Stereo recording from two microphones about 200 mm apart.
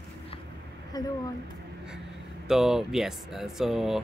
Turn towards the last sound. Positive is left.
turn(degrees=0)  # may be behind; listen again after turning